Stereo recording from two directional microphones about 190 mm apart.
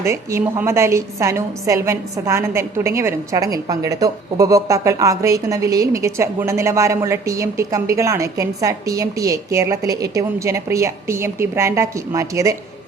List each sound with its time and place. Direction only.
0.0 s a woman's voice: 15° right (ahead or behind)